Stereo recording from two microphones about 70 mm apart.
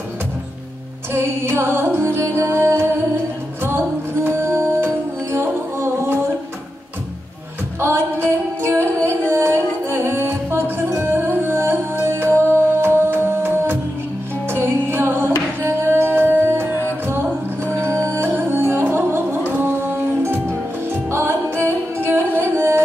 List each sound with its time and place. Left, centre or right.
1.1 s music: right
7.8 s music: right